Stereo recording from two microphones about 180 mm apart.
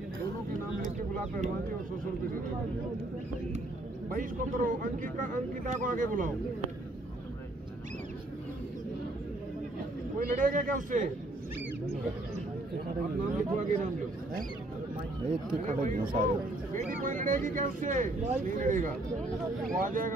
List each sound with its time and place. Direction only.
4.1 s speech: 50° right (ahead or behind)
10.1 s speech: 50° right (ahead or behind)
13.4 s speech: 45° right (ahead or behind)
15.2 s speech: 40° right (ahead or behind)